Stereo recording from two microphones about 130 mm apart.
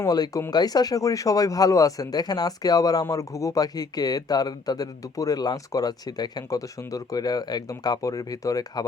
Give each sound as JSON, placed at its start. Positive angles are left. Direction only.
{"t": 0.0, "sound": "speech", "side_deg": 25}